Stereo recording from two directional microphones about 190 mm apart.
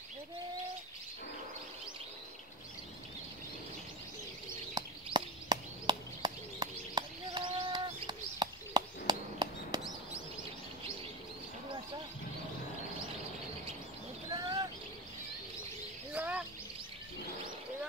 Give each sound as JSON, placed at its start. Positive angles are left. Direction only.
{"t": 4.7, "sound": "a sound", "side_deg": -20}
{"t": 14.3, "sound": "bird", "side_deg": -20}
{"t": 16.1, "sound": "bird", "side_deg": -5}